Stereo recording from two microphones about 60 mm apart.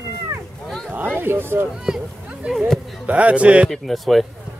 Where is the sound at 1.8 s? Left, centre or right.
Centre.